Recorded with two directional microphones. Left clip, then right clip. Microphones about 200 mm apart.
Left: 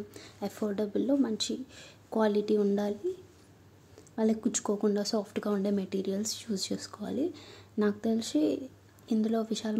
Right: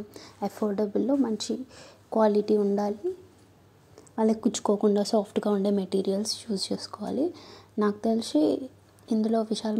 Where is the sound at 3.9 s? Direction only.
10° right (ahead or behind).